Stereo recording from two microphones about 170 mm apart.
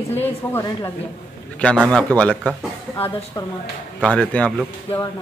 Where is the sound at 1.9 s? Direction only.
5° left (ahead or behind).